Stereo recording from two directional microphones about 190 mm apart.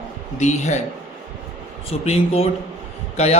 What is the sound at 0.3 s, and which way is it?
Speech, 35° left (ahead or behind).